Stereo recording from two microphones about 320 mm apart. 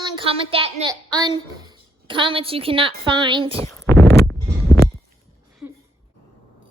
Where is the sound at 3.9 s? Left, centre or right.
Centre.